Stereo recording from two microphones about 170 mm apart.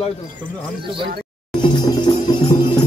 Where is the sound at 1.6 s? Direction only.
25° left (ahead or behind).